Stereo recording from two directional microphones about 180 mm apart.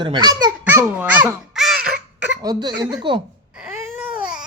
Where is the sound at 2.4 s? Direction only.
20° right (ahead or behind).